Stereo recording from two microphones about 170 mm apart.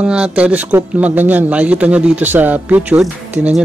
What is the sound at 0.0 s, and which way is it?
Speech, 5° right (ahead or behind).